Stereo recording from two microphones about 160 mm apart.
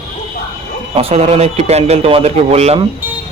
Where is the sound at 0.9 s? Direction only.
35° right (ahead or behind).